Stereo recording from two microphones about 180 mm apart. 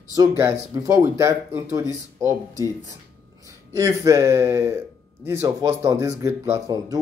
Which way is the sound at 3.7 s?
15° right (ahead or behind).